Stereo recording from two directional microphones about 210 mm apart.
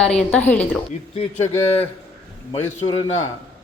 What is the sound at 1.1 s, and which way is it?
Speech, 30° left (ahead or behind).